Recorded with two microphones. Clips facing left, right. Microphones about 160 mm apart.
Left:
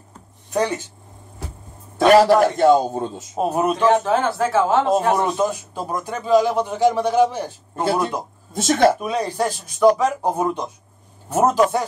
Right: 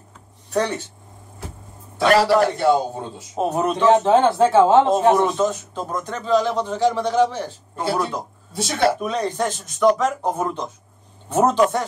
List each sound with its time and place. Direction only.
0.5 s speech: 15° left (ahead or behind)
2.2 s a man's voice: 45° left (ahead or behind)
3.3 s a man's voice: 5° left (ahead or behind)
3.9 s speech: 30° right (ahead or behind)
5.4 s a man's voice: 10° left (ahead or behind)
8.5 s a man's voice: 50° left (ahead or behind)
9.0 s a man's voice: 10° left (ahead or behind)